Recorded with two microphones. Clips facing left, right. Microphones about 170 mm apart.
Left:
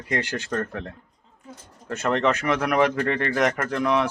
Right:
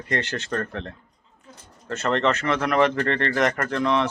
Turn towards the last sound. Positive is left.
turn(degrees=10)  # may be behind; listen again after turning